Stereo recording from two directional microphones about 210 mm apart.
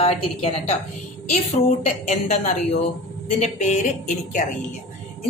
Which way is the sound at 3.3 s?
35° left (ahead or behind).